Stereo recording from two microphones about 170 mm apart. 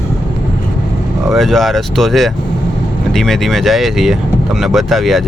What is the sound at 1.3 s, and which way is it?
Speech, centre (ahead or behind).